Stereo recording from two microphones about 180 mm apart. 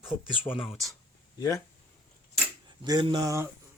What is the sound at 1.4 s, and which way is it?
Speech, 20° left (ahead or behind).